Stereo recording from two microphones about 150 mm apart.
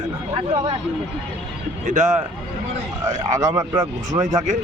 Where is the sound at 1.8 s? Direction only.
55° right (ahead or behind).